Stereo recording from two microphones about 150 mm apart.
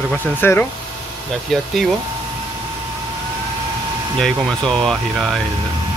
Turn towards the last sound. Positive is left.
turn(degrees=5)  # may be behind; listen again after turning